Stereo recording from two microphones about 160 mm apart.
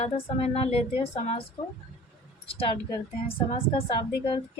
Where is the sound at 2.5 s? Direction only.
35° left (ahead or behind).